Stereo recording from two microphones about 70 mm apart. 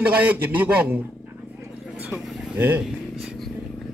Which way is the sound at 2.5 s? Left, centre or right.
Right.